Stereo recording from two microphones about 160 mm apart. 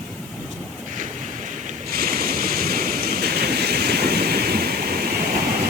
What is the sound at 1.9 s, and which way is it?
Waves, 70° right (ahead or behind).